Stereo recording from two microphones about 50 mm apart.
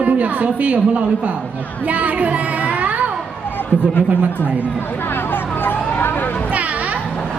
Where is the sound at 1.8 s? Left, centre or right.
Right.